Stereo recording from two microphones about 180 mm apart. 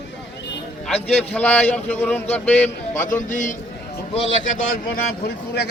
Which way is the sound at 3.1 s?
45° left (ahead or behind).